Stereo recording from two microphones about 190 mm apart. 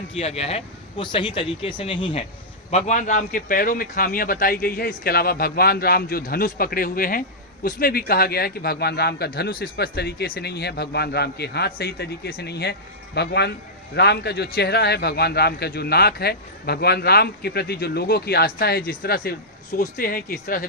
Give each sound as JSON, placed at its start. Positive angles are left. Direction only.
{"t": 0.1, "sound": "speech", "side_deg": 30}
{"t": 2.6, "sound": "a man's voice", "side_deg": 35}